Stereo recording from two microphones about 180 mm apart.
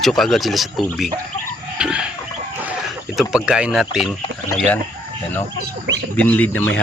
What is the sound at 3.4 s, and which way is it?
Speech, 5° right (ahead or behind).